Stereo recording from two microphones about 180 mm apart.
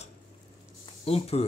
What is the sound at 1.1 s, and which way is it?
Speech, 35° left (ahead or behind).